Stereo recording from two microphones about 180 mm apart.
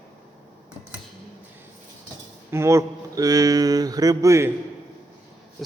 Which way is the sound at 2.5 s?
15° right (ahead or behind).